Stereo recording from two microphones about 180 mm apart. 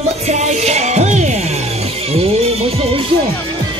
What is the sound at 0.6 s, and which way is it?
Music, 40° right (ahead or behind).